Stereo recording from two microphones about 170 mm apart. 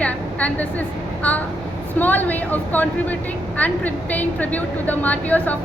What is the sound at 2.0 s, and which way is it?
Speech, 10° left (ahead or behind).